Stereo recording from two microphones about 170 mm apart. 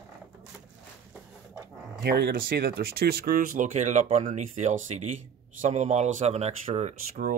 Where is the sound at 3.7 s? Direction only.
40° right (ahead or behind).